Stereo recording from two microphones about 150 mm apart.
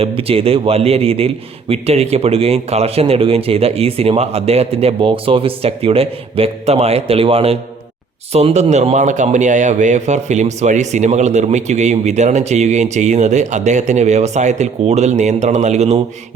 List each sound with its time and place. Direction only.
0.2 s a man's voice: 40° right (ahead or behind)